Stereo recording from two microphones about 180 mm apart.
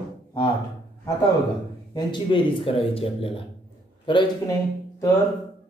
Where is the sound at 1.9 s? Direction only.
25° left (ahead or behind).